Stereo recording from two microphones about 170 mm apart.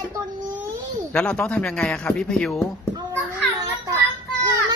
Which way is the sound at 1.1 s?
5° left (ahead or behind).